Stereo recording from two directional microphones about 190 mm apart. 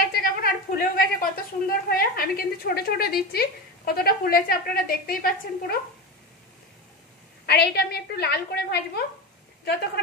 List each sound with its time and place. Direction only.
0.0 s a woman's voice: 50° left (ahead or behind)
7.4 s a woman's voice: 55° left (ahead or behind)